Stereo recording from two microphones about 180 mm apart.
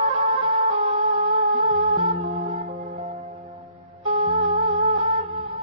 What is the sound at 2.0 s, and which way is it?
Music, 30° right (ahead or behind).